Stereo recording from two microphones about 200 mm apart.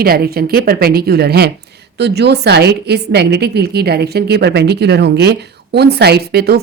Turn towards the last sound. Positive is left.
turn(degrees=-50)  # may be behind; listen again after turning